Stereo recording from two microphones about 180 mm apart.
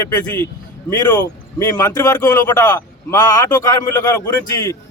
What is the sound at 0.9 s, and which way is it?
A man's voice, 10° left (ahead or behind).